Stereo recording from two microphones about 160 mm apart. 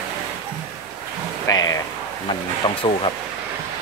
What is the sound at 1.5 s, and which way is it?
Speech, 20° left (ahead or behind).